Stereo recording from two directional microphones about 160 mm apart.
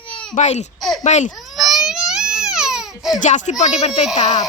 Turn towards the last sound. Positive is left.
turn(degrees=50)  # may be behind; listen again after turning